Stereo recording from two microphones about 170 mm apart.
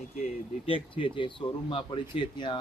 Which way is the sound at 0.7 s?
30° left (ahead or behind).